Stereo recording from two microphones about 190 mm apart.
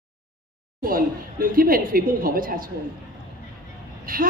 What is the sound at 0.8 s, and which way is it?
A woman's voice, 50° right (ahead or behind).